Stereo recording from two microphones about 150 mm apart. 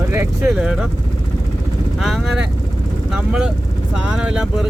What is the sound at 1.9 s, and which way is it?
Speech, centre (ahead or behind).